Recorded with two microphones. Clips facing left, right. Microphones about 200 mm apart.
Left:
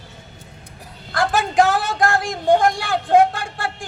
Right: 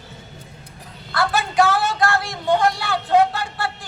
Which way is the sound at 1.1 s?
45° left (ahead or behind).